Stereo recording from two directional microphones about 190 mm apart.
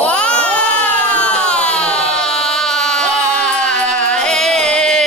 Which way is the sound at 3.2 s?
5° left (ahead or behind).